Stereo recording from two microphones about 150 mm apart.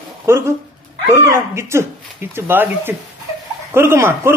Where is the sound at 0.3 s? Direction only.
15° right (ahead or behind).